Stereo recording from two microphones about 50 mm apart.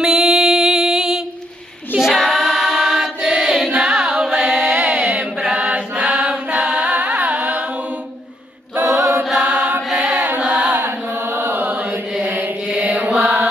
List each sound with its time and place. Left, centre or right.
0.0 s music: centre
2.0 s choir: centre
2.2 s chant: centre
3.2 s choir: centre
3.7 s singing: centre
4.4 s chant: centre
4.8 s chant: centre
6.1 s music: centre
8.8 s chant: right
9.4 s chant: right
9.8 s chant: centre
10.4 s a sound: right
10.8 s chant: right
12.6 s mantra: right